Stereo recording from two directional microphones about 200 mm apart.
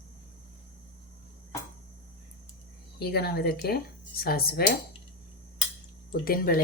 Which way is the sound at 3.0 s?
50° left (ahead or behind).